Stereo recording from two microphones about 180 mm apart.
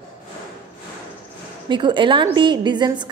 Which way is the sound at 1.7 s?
25° right (ahead or behind).